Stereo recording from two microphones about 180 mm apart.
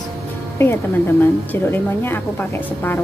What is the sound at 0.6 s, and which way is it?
Speech, 15° left (ahead or behind).